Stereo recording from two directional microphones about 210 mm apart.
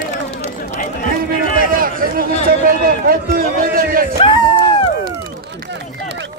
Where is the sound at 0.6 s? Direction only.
40° left (ahead or behind).